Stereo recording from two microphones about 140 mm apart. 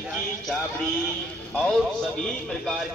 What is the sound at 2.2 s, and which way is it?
Speech, 5° left (ahead or behind).